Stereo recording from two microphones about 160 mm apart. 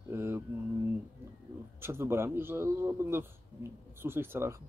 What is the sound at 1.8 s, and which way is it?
Speech, 15° right (ahead or behind).